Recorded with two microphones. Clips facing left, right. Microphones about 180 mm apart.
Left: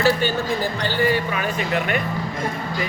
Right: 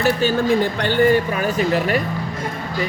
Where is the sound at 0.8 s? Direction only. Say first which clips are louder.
Right 3 dB; 55° right (ahead or behind); by 2.0 s 35° right (ahead or behind).